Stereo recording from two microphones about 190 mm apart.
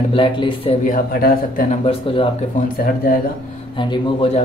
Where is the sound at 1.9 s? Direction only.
30° left (ahead or behind).